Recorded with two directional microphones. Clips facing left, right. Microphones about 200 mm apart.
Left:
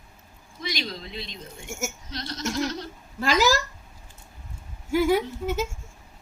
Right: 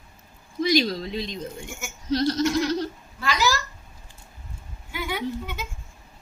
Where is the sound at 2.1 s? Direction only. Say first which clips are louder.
Right 13 dB; 40° right (ahead or behind).